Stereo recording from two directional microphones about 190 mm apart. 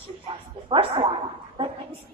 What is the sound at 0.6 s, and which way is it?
Speech, 30° right (ahead or behind).